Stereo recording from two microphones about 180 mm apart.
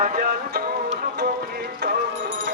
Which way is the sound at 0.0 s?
50° right (ahead or behind).